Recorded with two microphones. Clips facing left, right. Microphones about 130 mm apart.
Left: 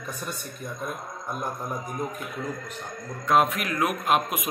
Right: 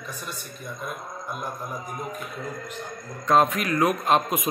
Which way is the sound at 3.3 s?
5° left (ahead or behind).